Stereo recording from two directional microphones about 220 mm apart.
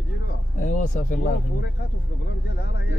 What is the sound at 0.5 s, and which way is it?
Speech, 35° left (ahead or behind).